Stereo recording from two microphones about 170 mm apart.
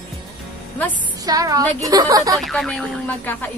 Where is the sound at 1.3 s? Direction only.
20° right (ahead or behind).